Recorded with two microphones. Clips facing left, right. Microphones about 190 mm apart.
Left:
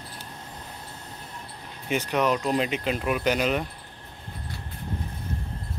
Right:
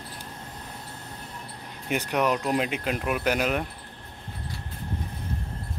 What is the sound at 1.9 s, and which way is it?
Speech, 10° right (ahead or behind).